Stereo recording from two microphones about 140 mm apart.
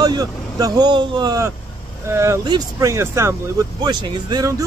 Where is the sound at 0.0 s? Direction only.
25° right (ahead or behind).